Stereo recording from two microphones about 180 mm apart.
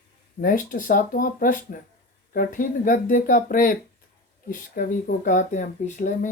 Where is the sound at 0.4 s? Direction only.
50° left (ahead or behind).